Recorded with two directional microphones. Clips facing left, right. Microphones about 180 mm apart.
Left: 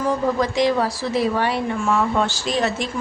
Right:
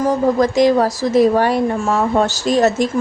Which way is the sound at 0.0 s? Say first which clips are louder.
Right 6 dB; 45° right (ahead or behind).